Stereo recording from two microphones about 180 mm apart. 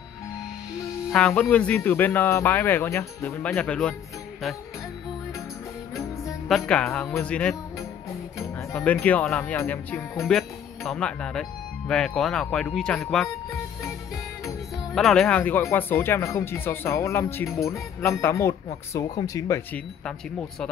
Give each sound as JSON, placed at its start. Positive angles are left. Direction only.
{"t": 1.1, "sound": "speech", "side_deg": 5}
{"t": 6.5, "sound": "speech", "side_deg": 5}
{"t": 8.7, "sound": "speech", "side_deg": 10}
{"t": 15.0, "sound": "speech", "side_deg": 0}